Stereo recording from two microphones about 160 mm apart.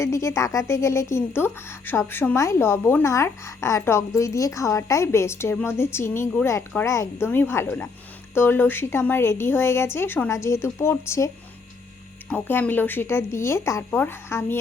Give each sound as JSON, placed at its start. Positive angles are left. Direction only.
{"t": 0.0, "sound": "a woman's voice", "side_deg": 15}
{"t": 12.3, "sound": "a woman's voice", "side_deg": 10}